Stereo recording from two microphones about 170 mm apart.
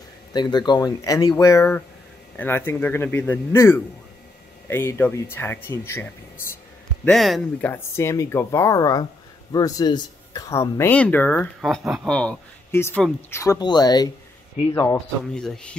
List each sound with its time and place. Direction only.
0.3 s speech: 25° left (ahead or behind)
7.1 s speech: centre (ahead or behind)
7.7 s speech: 15° left (ahead or behind)
11.6 s speech: centre (ahead or behind); by 15.0 s 20° left (ahead or behind)
15.3 s speech: 5° left (ahead or behind)